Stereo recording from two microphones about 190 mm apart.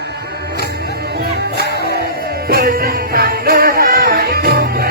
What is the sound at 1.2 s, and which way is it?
Music, 60° right (ahead or behind).